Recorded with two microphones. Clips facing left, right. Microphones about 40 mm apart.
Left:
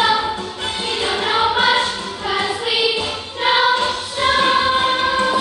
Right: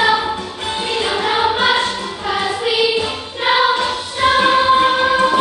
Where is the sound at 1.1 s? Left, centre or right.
Centre.